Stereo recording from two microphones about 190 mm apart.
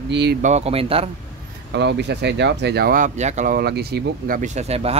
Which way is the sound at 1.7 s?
65° right (ahead or behind).